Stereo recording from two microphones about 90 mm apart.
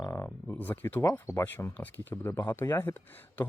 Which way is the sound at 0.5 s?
20° left (ahead or behind).